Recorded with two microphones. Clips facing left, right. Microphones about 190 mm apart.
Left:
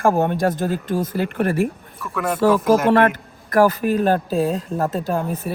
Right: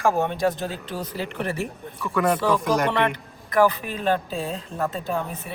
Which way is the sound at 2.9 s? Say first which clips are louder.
Left 8 dB; 45° left (ahead or behind).